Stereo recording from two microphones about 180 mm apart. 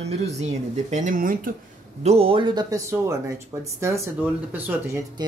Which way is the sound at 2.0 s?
30° right (ahead or behind).